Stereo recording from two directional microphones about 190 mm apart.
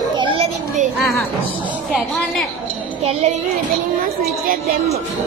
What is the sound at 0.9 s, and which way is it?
A woman's voice, centre (ahead or behind).